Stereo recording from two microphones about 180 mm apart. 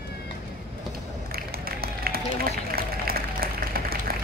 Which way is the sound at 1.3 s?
55° right (ahead or behind).